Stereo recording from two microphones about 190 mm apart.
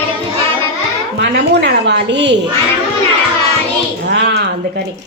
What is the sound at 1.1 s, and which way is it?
A woman's voice, 65° right (ahead or behind).